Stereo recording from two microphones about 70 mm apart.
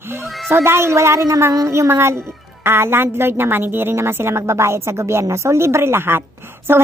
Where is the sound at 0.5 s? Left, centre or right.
Right.